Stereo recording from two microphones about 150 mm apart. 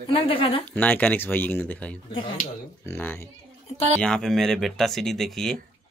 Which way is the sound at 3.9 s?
5° left (ahead or behind).